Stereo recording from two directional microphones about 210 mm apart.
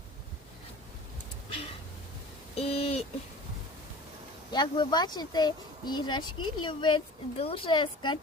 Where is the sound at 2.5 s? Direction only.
30° left (ahead or behind).